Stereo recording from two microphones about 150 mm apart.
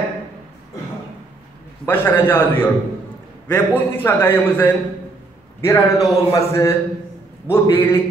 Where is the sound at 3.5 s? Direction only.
15° left (ahead or behind).